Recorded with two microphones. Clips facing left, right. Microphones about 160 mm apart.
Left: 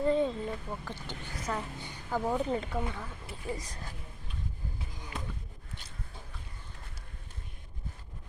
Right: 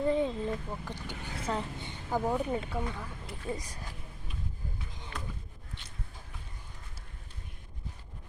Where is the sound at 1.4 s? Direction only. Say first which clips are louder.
Right 2 dB; 25° right (ahead or behind); by 2.7 s 10° right (ahead or behind).